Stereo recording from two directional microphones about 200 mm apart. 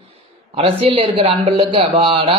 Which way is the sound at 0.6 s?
30° right (ahead or behind).